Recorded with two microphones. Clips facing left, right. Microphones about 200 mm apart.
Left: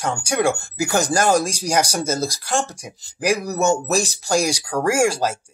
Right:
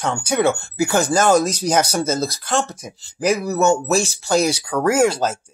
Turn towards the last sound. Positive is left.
turn(degrees=10)  # may be behind; listen again after turning